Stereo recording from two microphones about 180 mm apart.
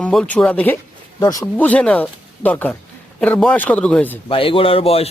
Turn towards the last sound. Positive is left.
turn(degrees=35)  # may be behind; listen again after turning